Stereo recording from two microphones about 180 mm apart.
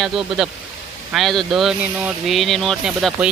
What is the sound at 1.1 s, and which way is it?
Speech, centre (ahead or behind).